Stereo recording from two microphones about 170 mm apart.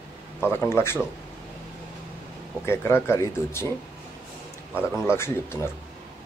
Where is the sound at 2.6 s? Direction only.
15° left (ahead or behind).